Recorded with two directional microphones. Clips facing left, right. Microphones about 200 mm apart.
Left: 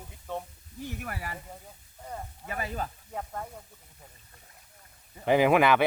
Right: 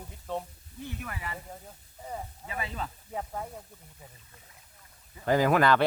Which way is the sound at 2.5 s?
45° left (ahead or behind).